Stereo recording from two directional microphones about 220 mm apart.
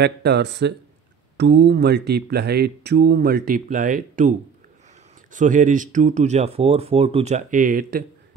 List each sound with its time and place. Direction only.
0.0 s speech: 50° right (ahead or behind)